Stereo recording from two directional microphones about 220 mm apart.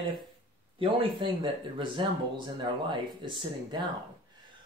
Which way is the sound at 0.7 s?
25° right (ahead or behind).